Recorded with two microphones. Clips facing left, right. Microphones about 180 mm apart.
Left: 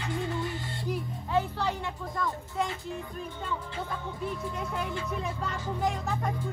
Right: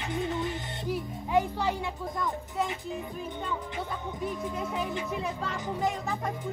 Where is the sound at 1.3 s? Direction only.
10° right (ahead or behind).